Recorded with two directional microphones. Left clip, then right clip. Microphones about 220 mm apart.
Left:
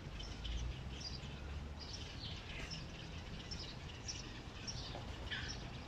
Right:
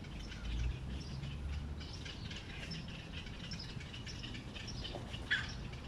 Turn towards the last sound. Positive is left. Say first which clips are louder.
# right 9 dB
turn(degrees=-45)  # may be behind; listen again after turning